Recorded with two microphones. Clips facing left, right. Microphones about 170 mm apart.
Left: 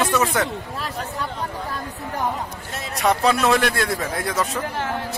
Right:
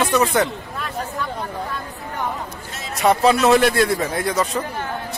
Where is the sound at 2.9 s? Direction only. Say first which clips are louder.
Right 3 dB; centre (ahead or behind).